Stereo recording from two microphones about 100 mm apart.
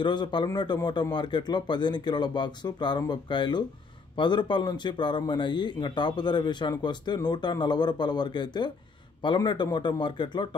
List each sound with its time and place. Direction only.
0.0 s speech: 50° left (ahead or behind)